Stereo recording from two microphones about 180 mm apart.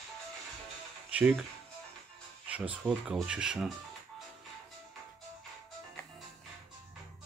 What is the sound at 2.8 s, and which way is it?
Speech, 5° right (ahead or behind).